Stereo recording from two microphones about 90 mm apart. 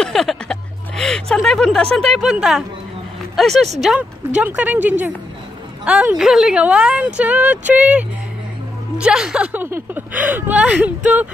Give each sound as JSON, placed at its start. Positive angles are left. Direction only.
{"t": 0.0, "sound": "music", "side_deg": 5}
{"t": 2.0, "sound": "speech", "side_deg": 5}
{"t": 2.3, "sound": "a woman's voice", "side_deg": -5}
{"t": 4.4, "sound": "a woman's voice", "side_deg": -15}
{"t": 9.5, "sound": "a woman's voice", "side_deg": -25}